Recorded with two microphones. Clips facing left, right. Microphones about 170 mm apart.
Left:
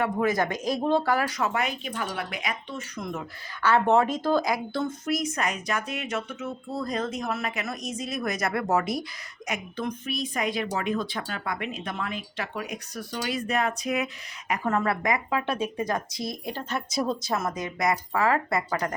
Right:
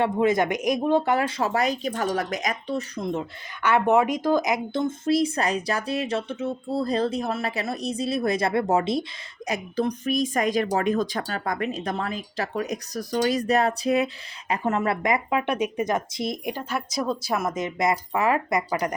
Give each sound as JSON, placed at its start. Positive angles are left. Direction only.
{"t": 0.0, "sound": "speech", "side_deg": -25}
{"t": 9.5, "sound": "a woman's voice", "side_deg": -35}
{"t": 14.5, "sound": "speech", "side_deg": -20}